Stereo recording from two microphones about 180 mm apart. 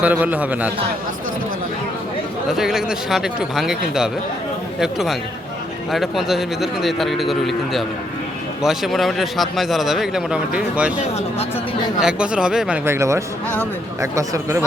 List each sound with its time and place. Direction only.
0.0 s a man's voice: 10° right (ahead or behind)
2.5 s a man's voice: centre (ahead or behind); by 14.6 s 15° right (ahead or behind)